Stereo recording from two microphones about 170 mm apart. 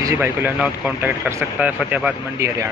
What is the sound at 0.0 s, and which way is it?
Speech, 15° right (ahead or behind).